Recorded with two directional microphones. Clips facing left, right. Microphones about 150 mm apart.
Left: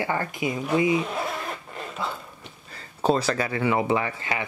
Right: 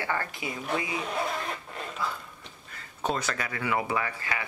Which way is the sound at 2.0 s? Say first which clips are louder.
Left 2 dB; 25° left (ahead or behind).